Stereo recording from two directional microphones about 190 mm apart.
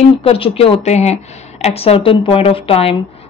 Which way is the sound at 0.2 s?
30° left (ahead or behind).